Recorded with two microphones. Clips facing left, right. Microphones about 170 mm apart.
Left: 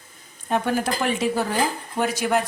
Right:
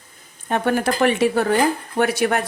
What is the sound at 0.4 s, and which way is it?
Speech, 65° right (ahead or behind).